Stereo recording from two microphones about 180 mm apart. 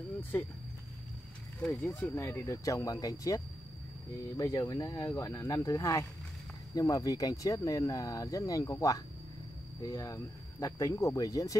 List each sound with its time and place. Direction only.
0.2 s speech: 10° left (ahead or behind)
1.6 s speech: 5° left (ahead or behind)